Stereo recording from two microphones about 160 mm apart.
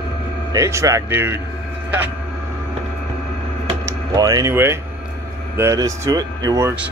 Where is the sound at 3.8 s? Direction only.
25° right (ahead or behind).